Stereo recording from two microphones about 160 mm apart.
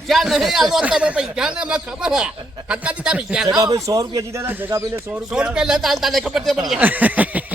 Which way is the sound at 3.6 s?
20° right (ahead or behind).